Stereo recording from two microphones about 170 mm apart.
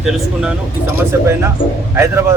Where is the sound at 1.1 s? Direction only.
15° right (ahead or behind).